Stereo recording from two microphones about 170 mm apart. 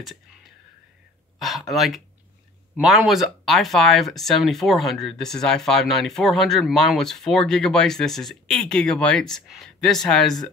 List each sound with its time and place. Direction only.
1.4 s speech: centre (ahead or behind)